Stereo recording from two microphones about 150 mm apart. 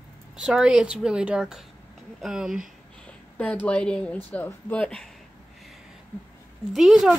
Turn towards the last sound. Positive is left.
turn(degrees=0)  # may be behind; listen again after turning